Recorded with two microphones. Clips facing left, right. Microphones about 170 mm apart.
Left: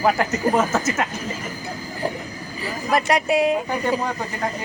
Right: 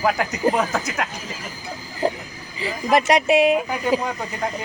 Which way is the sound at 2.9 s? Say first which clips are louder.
Right 3 dB; 15° right (ahead or behind).